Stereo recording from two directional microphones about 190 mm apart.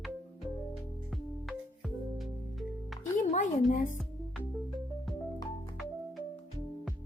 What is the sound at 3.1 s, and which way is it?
Music, 40° left (ahead or behind).